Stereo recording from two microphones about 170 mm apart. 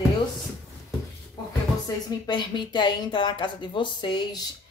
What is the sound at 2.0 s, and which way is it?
Speech, 25° left (ahead or behind).